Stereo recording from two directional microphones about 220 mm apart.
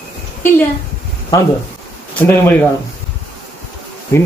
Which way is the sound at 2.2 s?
10° left (ahead or behind).